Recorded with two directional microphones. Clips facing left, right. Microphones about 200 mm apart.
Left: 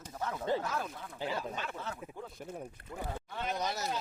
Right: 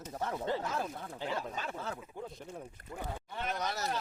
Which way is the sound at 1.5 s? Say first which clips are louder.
Right 1 dB; 35° right (ahead or behind).